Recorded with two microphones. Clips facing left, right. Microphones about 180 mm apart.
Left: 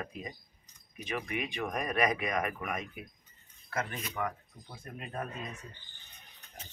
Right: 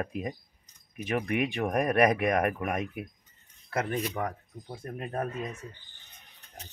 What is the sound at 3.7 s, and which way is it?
Speech, 35° right (ahead or behind).